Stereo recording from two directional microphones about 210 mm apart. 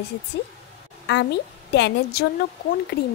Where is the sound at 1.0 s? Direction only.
55° left (ahead or behind).